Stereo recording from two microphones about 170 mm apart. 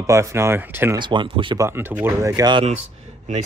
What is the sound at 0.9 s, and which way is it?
Speech, 25° right (ahead or behind).